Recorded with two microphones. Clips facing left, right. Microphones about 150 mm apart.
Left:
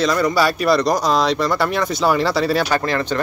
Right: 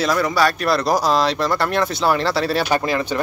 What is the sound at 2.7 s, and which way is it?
Speech, 15° right (ahead or behind).